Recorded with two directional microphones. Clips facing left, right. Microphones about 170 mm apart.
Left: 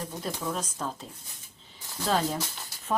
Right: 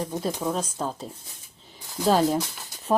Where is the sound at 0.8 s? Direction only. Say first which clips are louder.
Right 4 dB; 30° right (ahead or behind).